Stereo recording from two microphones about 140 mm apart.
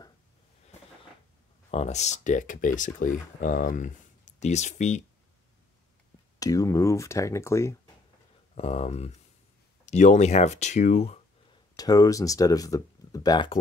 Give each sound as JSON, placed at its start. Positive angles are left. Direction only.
{"t": 1.7, "sound": "speech", "side_deg": 55}
{"t": 4.4, "sound": "speech", "side_deg": 55}
{"t": 6.4, "sound": "speech", "side_deg": 25}
{"t": 8.5, "sound": "speech", "side_deg": 50}
{"t": 11.7, "sound": "speech", "side_deg": 25}